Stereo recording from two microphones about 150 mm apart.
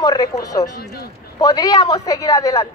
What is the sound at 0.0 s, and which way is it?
A woman's voice, 25° left (ahead or behind).